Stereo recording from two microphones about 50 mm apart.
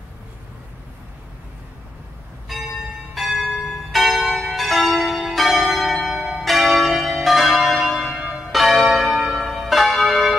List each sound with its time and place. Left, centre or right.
2.5 s church bell: centre
3.2 s change ringing: centre
8.7 s church bell: centre